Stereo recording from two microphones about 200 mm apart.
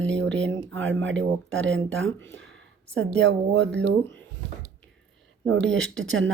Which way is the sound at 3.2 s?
60° right (ahead or behind).